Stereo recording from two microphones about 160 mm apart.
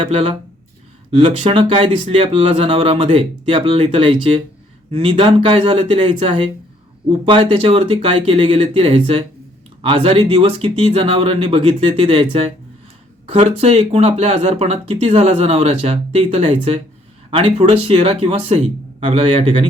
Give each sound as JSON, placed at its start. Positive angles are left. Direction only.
{"t": 0.0, "sound": "speech", "side_deg": -35}